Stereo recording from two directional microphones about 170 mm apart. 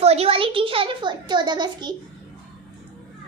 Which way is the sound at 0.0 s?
35° right (ahead or behind).